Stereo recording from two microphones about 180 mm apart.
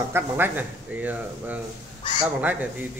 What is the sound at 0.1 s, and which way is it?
A man's voice, 10° right (ahead or behind).